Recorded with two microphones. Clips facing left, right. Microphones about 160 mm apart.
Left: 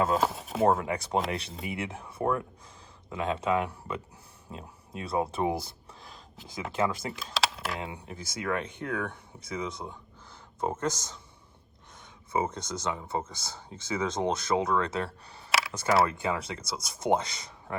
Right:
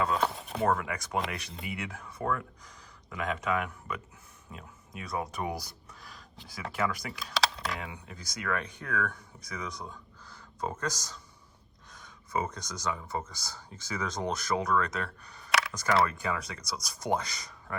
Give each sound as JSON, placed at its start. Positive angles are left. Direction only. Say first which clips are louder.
{"t": 0.6, "sound": "speech", "louder": "left 4 dB", "side_deg": 25}
{"t": 7.3, "sound": "a sound", "louder": "right 1 dB", "side_deg": 5}
{"t": 7.7, "sound": "speech", "louder": "left 3 dB", "side_deg": 25}